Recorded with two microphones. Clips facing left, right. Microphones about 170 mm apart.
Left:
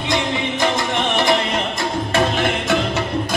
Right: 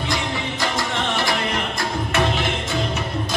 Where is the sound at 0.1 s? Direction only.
20° left (ahead or behind).